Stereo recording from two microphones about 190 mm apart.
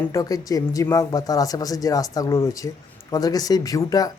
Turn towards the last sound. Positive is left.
turn(degrees=20)  # may be behind; listen again after turning